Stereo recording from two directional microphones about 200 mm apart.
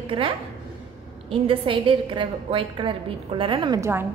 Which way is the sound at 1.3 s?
25° right (ahead or behind).